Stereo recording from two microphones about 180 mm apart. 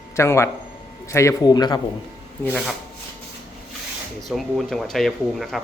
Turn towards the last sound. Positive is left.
turn(degrees=0)  # may be behind; listen again after turning